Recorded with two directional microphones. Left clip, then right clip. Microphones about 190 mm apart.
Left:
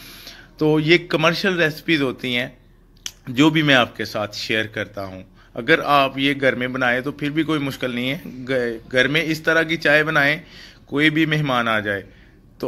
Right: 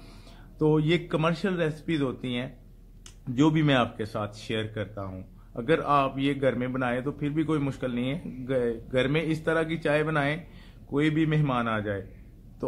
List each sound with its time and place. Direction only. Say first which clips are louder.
0.6 s a man's voice: left 8 dB; 5° left (ahead or behind)
4.9 s speech: left 7 dB; 25° left (ahead or behind)
5.6 s a man's voice: left 8 dB; 10° left (ahead or behind)